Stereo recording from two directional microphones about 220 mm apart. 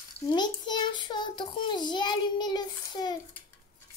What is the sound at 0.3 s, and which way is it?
Child singing, 20° left (ahead or behind).